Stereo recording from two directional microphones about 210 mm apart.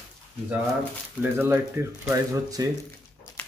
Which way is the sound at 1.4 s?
10° right (ahead or behind).